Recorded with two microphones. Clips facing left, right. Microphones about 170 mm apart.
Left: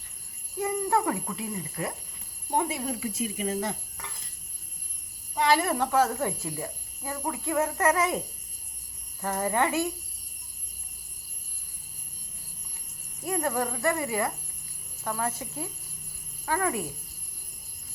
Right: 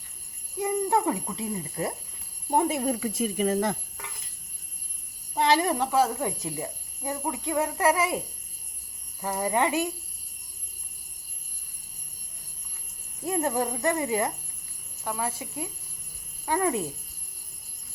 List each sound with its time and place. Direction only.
0.6 s speech: 20° right (ahead or behind)
2.5 s speech: 40° right (ahead or behind); by 3.8 s 55° right (ahead or behind)
5.5 s speech: 20° right (ahead or behind)
9.2 s speech: 10° right (ahead or behind)
13.2 s speech: 20° right (ahead or behind)
15.0 s speech: 10° right (ahead or behind)
16.5 s speech: 20° right (ahead or behind)